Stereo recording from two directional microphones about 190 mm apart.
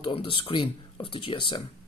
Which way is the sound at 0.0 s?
30° left (ahead or behind).